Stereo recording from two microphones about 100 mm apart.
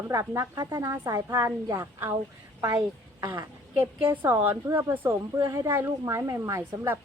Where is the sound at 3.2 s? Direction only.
30° right (ahead or behind).